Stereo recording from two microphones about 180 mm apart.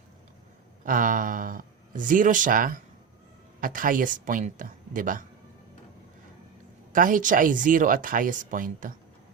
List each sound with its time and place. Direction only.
0.9 s speech: 50° right (ahead or behind)
6.9 s speech: 50° right (ahead or behind)